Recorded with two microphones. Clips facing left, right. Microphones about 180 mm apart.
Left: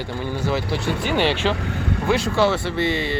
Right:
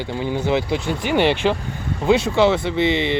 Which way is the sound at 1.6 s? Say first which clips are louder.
Left 3 dB; 65° left (ahead or behind).